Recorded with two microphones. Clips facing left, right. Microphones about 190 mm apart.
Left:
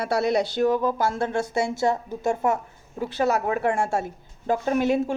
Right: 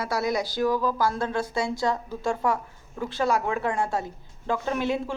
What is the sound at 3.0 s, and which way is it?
Speech, 40° left (ahead or behind).